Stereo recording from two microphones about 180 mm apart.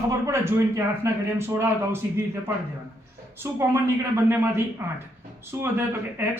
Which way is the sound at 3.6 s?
15° right (ahead or behind).